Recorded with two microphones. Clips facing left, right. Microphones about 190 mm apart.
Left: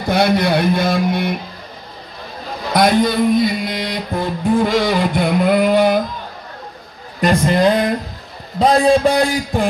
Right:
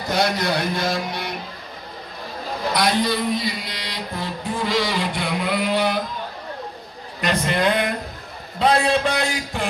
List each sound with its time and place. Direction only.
0.1 s a man's voice: 60° left (ahead or behind)
2.7 s a man's voice: 50° left (ahead or behind)
7.2 s a man's voice: 40° left (ahead or behind)